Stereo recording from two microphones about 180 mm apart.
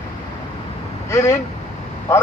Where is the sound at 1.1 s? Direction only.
15° left (ahead or behind).